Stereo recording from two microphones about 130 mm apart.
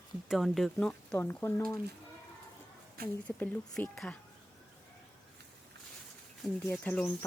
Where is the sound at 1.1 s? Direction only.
20° left (ahead or behind).